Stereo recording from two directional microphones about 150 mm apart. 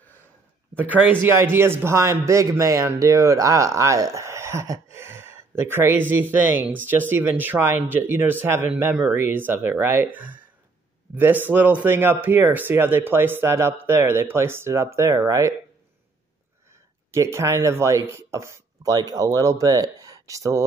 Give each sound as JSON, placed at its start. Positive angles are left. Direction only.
{"t": 0.7, "sound": "a man's voice", "side_deg": -10}
{"t": 17.1, "sound": "speech", "side_deg": -20}